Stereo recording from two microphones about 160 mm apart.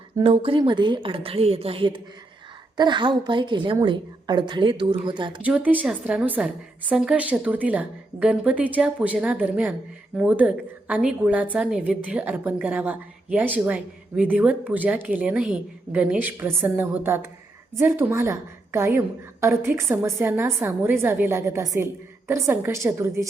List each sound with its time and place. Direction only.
0.2 s a woman's voice: 35° right (ahead or behind)
5.4 s a woman's voice: 10° right (ahead or behind)